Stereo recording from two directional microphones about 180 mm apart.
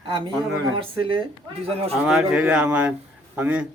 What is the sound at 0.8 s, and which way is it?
Speech, 30° right (ahead or behind).